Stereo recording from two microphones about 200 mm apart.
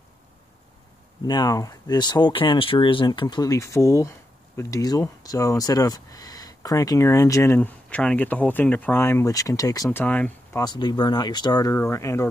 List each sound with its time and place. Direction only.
1.2 s speech: 20° left (ahead or behind)
10.6 s speech: 20° left (ahead or behind)